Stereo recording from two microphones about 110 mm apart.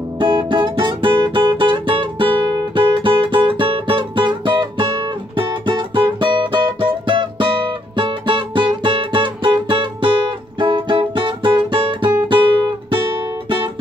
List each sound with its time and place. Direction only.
0.2 s music: 50° right (ahead or behind)